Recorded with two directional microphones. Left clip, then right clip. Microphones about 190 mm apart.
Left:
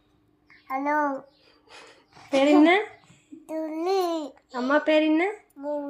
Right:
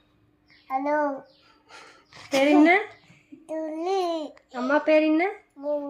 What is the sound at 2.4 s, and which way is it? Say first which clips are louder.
A child's voice: even; 10° right (ahead or behind).